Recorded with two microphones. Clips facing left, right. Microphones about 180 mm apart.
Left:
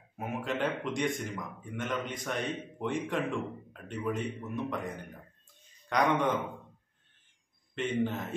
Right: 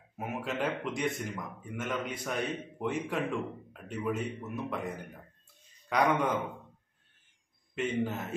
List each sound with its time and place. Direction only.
0.2 s speech: 5° right (ahead or behind)
5.9 s speech: 5° right (ahead or behind)
7.7 s speech: 5° right (ahead or behind)